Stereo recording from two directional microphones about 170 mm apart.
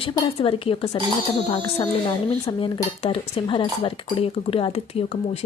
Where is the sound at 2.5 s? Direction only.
30° left (ahead or behind).